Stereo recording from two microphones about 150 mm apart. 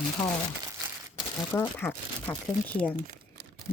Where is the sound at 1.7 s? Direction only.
15° left (ahead or behind).